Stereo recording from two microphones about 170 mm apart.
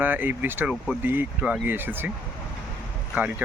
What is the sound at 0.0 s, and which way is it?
Speech, 10° right (ahead or behind).